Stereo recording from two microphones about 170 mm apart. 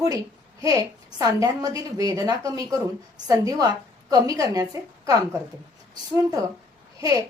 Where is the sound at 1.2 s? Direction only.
20° right (ahead or behind).